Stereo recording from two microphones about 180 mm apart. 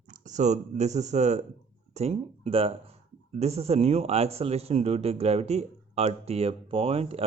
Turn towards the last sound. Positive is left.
turn(degrees=-35)  # may be behind; listen again after turning